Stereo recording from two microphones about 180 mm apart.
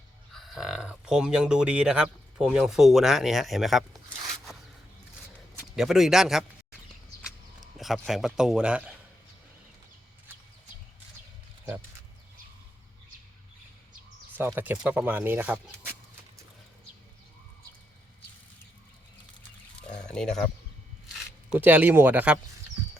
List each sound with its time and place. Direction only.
0.3 s speech: centre (ahead or behind)
5.7 s a man's voice: centre (ahead or behind)
7.2 s a sound: 5° right (ahead or behind)
14.3 s speech: 10° right (ahead or behind)
20.1 s speech: 5° left (ahead or behind)
21.5 s speech: 10° right (ahead or behind)